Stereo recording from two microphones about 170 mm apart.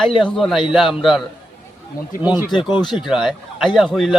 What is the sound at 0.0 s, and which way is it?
A man's voice, centre (ahead or behind).